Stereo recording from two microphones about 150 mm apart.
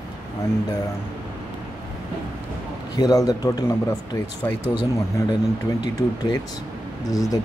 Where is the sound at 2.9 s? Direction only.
25° left (ahead or behind).